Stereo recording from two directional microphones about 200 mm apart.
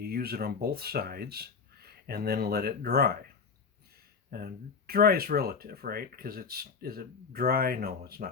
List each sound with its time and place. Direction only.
0.0 s speech: 50° right (ahead or behind)
4.3 s speech: 50° right (ahead or behind)